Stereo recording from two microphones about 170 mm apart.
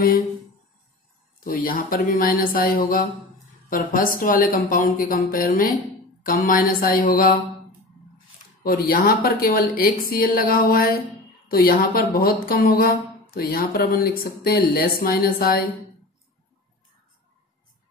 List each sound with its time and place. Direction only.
1.4 s speech: 55° left (ahead or behind)
8.6 s speech: 60° left (ahead or behind)